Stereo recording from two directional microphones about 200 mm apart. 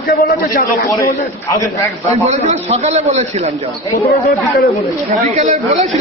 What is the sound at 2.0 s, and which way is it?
A man's voice, 35° right (ahead or behind).